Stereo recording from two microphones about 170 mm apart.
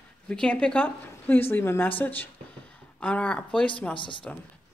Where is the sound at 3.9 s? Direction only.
30° left (ahead or behind).